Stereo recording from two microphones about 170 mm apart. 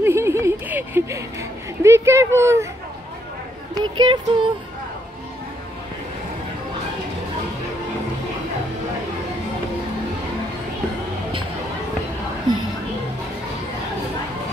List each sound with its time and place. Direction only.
0.0 s a sound: 15° right (ahead or behind)
1.8 s speech: 15° right (ahead or behind)
3.7 s speech: 25° right (ahead or behind)